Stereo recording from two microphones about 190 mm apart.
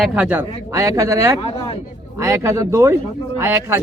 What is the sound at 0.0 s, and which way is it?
Speech, 10° right (ahead or behind).